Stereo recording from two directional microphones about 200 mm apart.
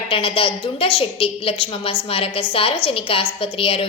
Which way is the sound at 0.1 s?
25° left (ahead or behind).